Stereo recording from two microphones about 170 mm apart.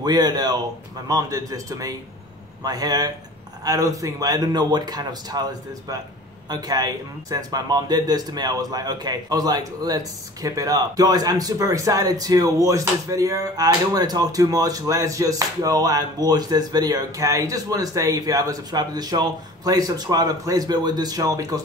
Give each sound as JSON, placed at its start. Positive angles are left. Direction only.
{"t": 0.0, "sound": "speech", "side_deg": -25}